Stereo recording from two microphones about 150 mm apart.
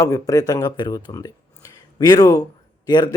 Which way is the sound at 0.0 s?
25° left (ahead or behind).